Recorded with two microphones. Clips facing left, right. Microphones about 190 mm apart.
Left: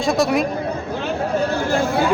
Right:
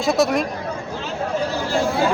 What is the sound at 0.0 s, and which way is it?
Speech, centre (ahead or behind).